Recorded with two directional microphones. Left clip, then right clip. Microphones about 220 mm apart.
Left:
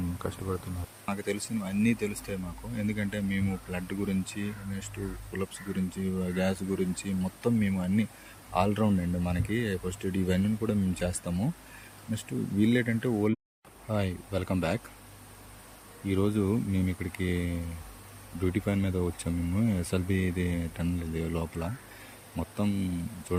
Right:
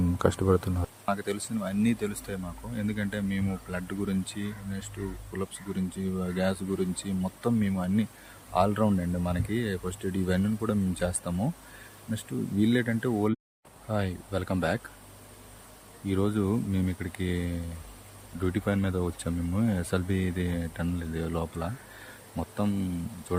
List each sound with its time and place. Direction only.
0.2 s speech: 25° right (ahead or behind)
1.0 s speech: 15° right (ahead or behind)
16.0 s speech: 15° right (ahead or behind)